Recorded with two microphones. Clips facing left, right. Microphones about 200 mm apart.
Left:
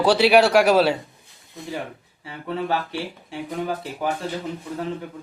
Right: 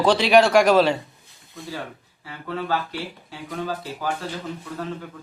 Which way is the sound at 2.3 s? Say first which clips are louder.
Left 1 dB; 25° left (ahead or behind).